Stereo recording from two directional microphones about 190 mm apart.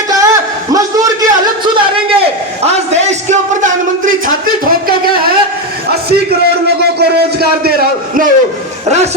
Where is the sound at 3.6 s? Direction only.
45° right (ahead or behind).